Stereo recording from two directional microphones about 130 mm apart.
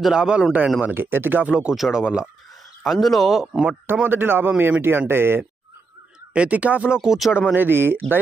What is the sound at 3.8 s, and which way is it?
A man's voice, 15° right (ahead or behind).